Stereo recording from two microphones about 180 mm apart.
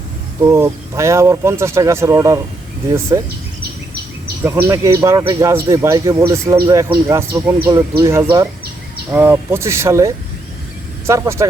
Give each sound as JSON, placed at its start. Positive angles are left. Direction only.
{"t": 0.5, "sound": "speech", "side_deg": -15}
{"t": 4.4, "sound": "speech", "side_deg": -15}